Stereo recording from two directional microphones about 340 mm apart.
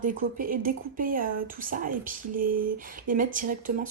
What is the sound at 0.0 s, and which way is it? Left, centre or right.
Speech, right.